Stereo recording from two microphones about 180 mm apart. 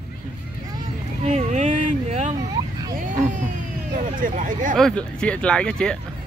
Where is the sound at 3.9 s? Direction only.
45° right (ahead or behind).